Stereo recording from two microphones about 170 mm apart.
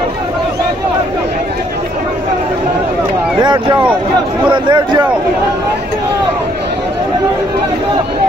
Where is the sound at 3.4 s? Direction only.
25° right (ahead or behind).